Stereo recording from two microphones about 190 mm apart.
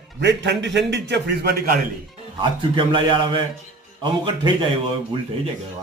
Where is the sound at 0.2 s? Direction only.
65° right (ahead or behind).